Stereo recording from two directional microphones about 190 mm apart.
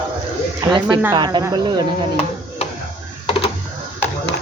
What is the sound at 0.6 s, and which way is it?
Speech, 25° right (ahead or behind).